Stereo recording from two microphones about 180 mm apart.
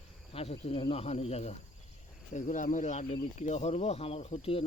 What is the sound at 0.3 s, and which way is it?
Speech, 35° left (ahead or behind).